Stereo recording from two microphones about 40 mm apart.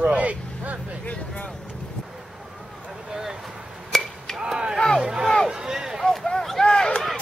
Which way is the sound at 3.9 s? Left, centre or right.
Centre.